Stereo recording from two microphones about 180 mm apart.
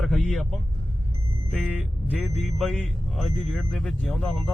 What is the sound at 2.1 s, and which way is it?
Speech, centre (ahead or behind).